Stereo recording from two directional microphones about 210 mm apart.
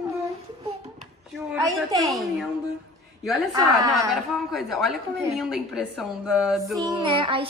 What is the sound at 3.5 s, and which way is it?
Speech, 15° right (ahead or behind).